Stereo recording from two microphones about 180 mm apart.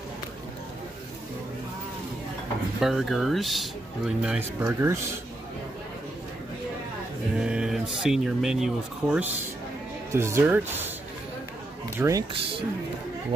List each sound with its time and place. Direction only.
2.8 s speech: centre (ahead or behind)
7.3 s male singing: 5° right (ahead or behind)
8.0 s speech: 5° right (ahead or behind)
12.0 s speech: 20° right (ahead or behind)